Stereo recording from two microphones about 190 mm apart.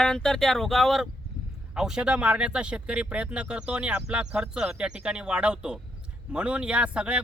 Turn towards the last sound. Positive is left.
turn(degrees=-5)  # may be behind; listen again after turning